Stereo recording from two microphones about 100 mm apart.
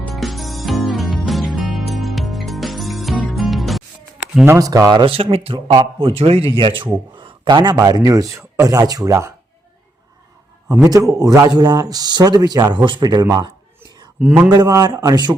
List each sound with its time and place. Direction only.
0.1 s music: centre (ahead or behind)
4.4 s speech: 35° right (ahead or behind)
5.0 s speech: 70° right (ahead or behind)
6.5 s a man's voice: 55° right (ahead or behind)
7.8 s speech: 35° right (ahead or behind)
11.1 s speech: 35° right (ahead or behind)
14.2 s a man's voice: 15° right (ahead or behind)
14.5 s speech: 40° right (ahead or behind)